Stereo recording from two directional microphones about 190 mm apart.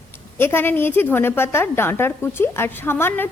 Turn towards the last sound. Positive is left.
turn(degrees=10)  # may be behind; listen again after turning